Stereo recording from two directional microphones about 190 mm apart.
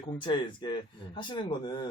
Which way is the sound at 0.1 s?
25° left (ahead or behind).